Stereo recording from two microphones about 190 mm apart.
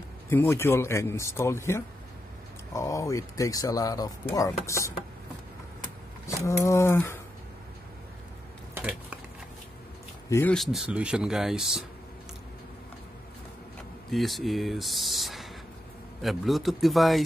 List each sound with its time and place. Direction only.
0.3 s speech: 10° left (ahead or behind)
6.2 s speech: 15° left (ahead or behind)
8.7 s a sound: 10° right (ahead or behind)
10.3 s speech: 5° left (ahead or behind)
14.1 s speech: centre (ahead or behind)